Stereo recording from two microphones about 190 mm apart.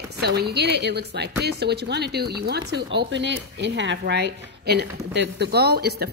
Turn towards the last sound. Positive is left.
turn(degrees=-55)  # may be behind; listen again after turning